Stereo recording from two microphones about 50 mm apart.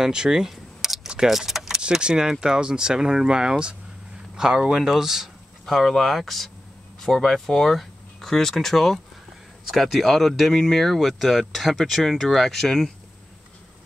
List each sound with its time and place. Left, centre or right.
0.0 s camera: centre
1.0 s keys jangling: centre
1.3 s keys jangling: centre
1.8 s speech: centre